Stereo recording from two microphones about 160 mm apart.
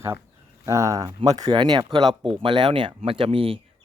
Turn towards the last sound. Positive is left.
turn(degrees=-35)  # may be behind; listen again after turning